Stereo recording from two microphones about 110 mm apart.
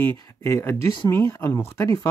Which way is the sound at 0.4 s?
25° left (ahead or behind).